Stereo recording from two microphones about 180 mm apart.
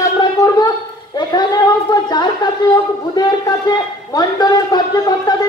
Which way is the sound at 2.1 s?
25° left (ahead or behind).